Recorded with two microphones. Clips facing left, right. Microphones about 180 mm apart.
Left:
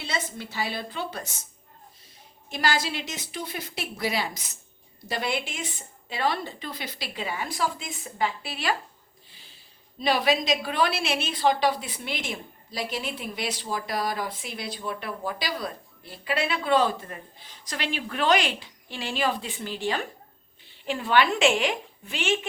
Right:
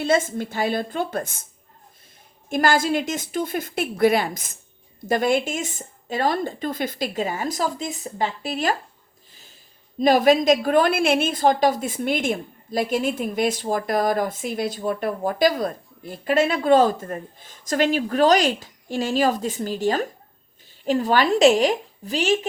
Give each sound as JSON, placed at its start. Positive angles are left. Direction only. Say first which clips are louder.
{"t": 0.0, "sound": "a woman's voice", "louder": "right 12 dB", "side_deg": -50}
{"t": 2.5, "sound": "a woman's voice", "louder": "right 7 dB", "side_deg": -50}
{"t": 9.3, "sound": "a sound", "louder": "right 4 dB", "side_deg": -45}
{"t": 10.0, "sound": "a woman's voice", "louder": "right 8 dB", "side_deg": -45}